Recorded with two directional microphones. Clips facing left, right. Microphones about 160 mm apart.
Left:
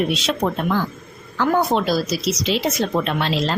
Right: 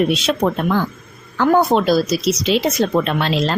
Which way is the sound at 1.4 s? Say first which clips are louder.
Right 4 dB; 55° right (ahead or behind).